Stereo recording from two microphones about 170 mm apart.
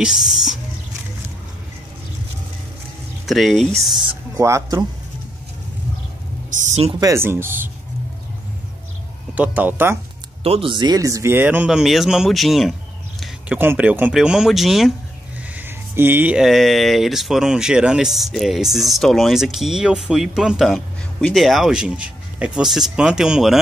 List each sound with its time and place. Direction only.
0.0 s speech: centre (ahead or behind)
3.3 s speech: centre (ahead or behind)
4.4 s speech: 15° right (ahead or behind)
6.7 s speech: 35° right (ahead or behind)
7.0 s speech: 15° right (ahead or behind)
9.3 s speech: 10° right (ahead or behind)
10.4 s speech: 35° right (ahead or behind); by 14.9 s centre (ahead or behind)
15.5 s speech: 10° right (ahead or behind)